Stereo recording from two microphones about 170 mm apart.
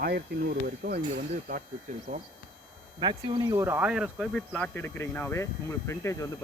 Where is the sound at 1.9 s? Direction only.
50° right (ahead or behind).